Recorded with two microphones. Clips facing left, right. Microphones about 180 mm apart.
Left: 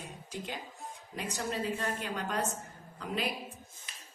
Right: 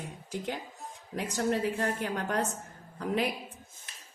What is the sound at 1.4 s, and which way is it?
A woman's voice, 60° right (ahead or behind).